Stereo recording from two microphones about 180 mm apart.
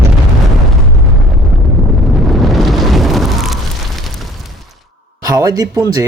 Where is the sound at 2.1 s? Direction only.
Centre (ahead or behind).